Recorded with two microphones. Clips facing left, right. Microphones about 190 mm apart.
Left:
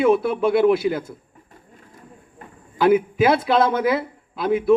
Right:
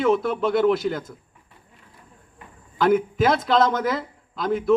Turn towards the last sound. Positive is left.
turn(degrees=10)  # may be behind; listen again after turning